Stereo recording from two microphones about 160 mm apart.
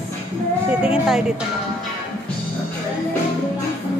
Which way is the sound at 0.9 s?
Centre (ahead or behind).